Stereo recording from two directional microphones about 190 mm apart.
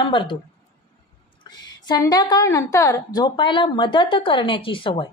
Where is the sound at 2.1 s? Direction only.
15° left (ahead or behind).